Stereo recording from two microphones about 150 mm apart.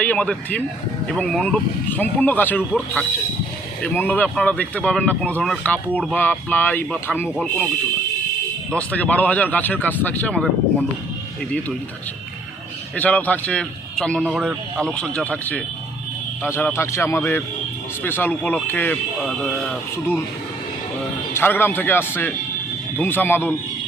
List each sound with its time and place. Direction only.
0.0 s a man's voice: 10° left (ahead or behind)
8.7 s a man's voice: 10° left (ahead or behind)
13.0 s a man's voice: 10° left (ahead or behind)
19.2 s speech: centre (ahead or behind)
21.3 s a man's voice: 15° left (ahead or behind)